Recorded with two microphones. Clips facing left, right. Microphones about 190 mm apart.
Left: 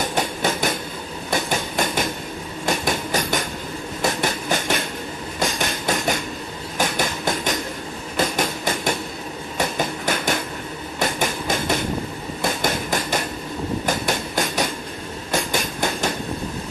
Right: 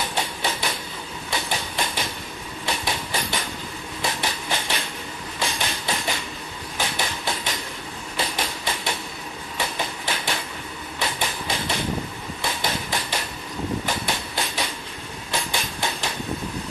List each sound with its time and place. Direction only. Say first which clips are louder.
0.0 s train: left 5 dB; 45° left (ahead or behind)
11.0 s a sound: left 5 dB; 45° left (ahead or behind)
13.8 s train: left 5 dB; 45° left (ahead or behind)